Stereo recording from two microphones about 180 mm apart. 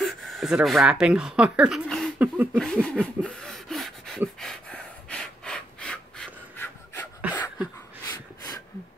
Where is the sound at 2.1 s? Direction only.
10° right (ahead or behind).